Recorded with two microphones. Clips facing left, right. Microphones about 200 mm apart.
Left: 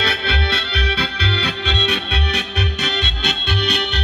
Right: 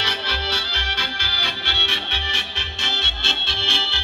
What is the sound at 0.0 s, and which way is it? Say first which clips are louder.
Music: left 6 dB; 55° left (ahead or behind).